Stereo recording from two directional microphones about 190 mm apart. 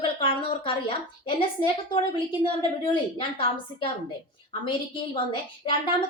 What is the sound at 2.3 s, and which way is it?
A woman's voice, 25° left (ahead or behind).